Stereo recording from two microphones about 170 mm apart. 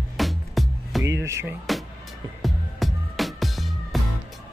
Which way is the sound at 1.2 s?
15° right (ahead or behind).